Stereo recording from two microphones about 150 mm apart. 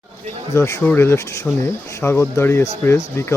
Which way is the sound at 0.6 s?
20° left (ahead or behind).